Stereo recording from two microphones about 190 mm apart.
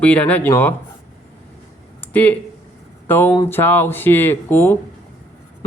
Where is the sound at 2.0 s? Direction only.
10° left (ahead or behind).